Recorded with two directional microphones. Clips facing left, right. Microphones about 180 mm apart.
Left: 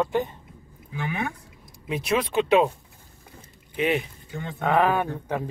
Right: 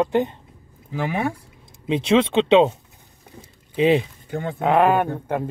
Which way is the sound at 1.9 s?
25° right (ahead or behind).